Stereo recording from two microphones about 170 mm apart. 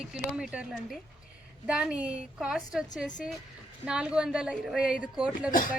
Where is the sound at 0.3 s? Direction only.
5° right (ahead or behind).